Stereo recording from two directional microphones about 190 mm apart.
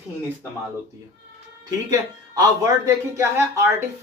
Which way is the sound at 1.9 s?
20° right (ahead or behind).